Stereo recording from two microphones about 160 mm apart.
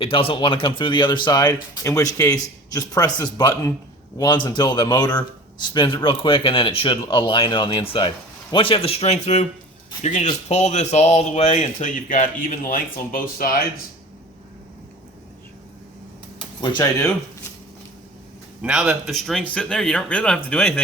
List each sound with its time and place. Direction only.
0.0 s speech: 35° left (ahead or behind); by 13.7 s 65° left (ahead or behind)
16.6 s speech: 25° left (ahead or behind)
18.6 s speech: 5° right (ahead or behind)